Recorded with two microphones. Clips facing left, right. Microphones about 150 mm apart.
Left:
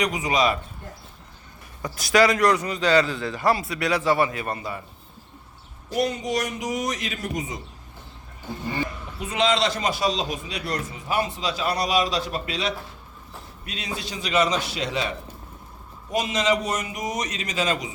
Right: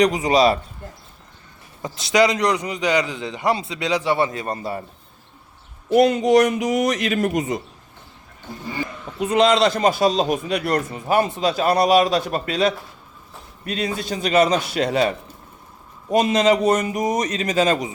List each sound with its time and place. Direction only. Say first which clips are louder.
0.0 s a man's voice: right 7 dB; 35° right (ahead or behind)
1.8 s a man's voice: right 2 dB; 25° right (ahead or behind)
4.5 s a man's voice: right 5 dB; 35° right (ahead or behind)
5.9 s a man's voice: right 10 dB; 65° right (ahead or behind)
9.3 s a man's voice: right 6 dB; 40° right (ahead or behind)
16.1 s a man's voice: right 7 dB; 55° right (ahead or behind)